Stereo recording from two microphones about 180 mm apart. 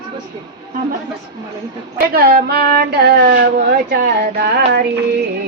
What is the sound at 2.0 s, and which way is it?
Speech, 55° right (ahead or behind).